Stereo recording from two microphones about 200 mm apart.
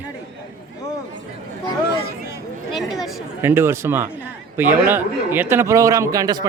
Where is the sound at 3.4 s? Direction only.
10° right (ahead or behind).